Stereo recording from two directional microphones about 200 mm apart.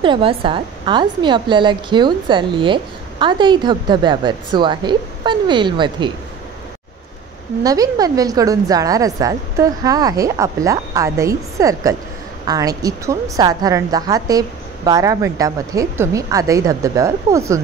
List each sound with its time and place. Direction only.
0.0 s a woman's voice: 25° right (ahead or behind)
7.6 s a woman's voice: 20° right (ahead or behind)